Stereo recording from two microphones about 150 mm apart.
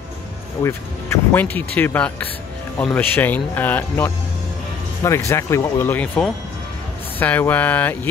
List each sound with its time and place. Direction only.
0.7 s speech: 15° left (ahead or behind)